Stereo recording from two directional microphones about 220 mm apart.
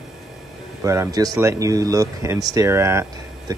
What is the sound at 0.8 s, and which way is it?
Speech, 15° right (ahead or behind).